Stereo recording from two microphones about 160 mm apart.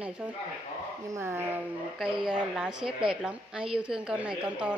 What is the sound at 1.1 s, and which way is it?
Speech, 15° right (ahead or behind).